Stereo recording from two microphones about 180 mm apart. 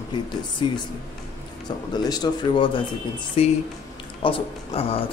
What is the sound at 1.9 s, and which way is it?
Speech, 20° left (ahead or behind).